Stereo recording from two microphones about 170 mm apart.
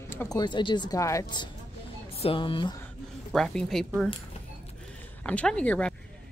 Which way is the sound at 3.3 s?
5° left (ahead or behind).